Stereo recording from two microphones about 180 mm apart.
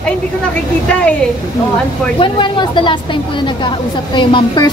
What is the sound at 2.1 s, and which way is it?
A woman's voice, 25° left (ahead or behind).